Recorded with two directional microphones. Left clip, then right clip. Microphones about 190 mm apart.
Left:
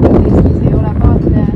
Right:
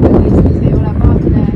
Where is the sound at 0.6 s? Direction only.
10° left (ahead or behind).